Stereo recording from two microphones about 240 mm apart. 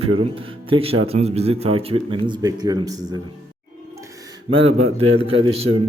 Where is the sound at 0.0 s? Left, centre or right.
Right.